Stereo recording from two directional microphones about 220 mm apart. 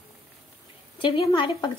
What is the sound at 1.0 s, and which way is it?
Speech, 20° left (ahead or behind).